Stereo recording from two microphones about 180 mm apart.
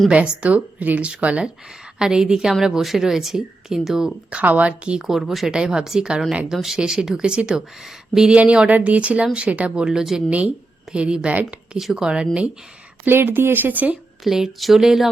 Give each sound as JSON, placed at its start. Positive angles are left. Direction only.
{"t": 0.0, "sound": "a woman's voice", "side_deg": -5}